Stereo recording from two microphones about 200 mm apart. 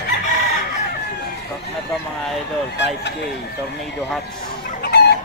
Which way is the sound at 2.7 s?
60° left (ahead or behind).